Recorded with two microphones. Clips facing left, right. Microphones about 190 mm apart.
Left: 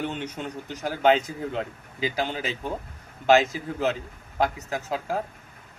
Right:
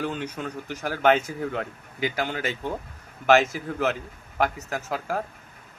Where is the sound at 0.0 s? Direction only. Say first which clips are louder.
Right 1 dB; 25° left (ahead or behind).